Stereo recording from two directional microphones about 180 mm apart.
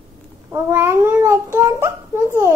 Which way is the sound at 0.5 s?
15° right (ahead or behind).